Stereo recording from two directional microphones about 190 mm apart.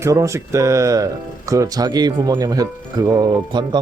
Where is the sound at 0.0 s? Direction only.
15° right (ahead or behind).